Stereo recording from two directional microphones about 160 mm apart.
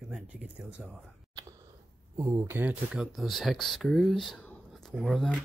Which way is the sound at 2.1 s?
15° right (ahead or behind).